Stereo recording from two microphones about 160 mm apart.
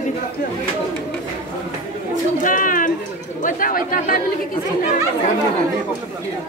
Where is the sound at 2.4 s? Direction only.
55° left (ahead or behind).